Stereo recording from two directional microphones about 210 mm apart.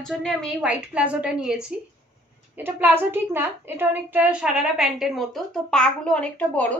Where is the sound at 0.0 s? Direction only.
Centre (ahead or behind).